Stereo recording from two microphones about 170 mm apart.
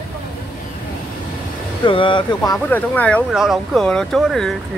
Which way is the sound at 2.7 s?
10° left (ahead or behind).